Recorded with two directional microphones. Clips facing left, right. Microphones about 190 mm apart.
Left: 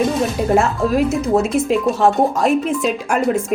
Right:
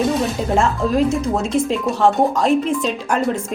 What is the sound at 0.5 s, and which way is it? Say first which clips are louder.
Speech: left 1 dB; 5° left (ahead or behind).